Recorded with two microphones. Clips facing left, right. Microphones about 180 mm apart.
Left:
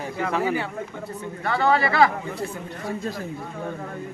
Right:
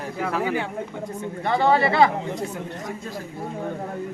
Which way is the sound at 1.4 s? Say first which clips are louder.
Right 2 dB; 25° right (ahead or behind).